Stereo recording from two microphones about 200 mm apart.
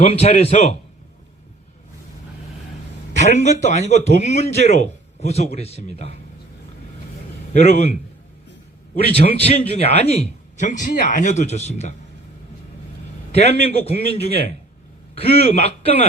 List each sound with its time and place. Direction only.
0.0 s a man's voice: 30° left (ahead or behind)
3.1 s a man's voice: 35° left (ahead or behind)
7.5 s a man's voice: 30° left (ahead or behind)
9.1 s a man's voice: 30° left (ahead or behind)
13.3 s a man's voice: 30° left (ahead or behind)